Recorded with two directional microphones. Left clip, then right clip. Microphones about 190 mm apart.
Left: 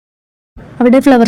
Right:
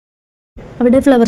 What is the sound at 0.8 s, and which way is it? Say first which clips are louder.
Speech: left 2 dB; 30° left (ahead or behind).